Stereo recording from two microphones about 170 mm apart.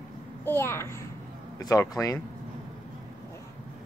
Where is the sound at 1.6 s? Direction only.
20° left (ahead or behind).